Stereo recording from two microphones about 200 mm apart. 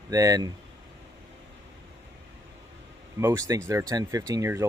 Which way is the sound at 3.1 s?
15° right (ahead or behind).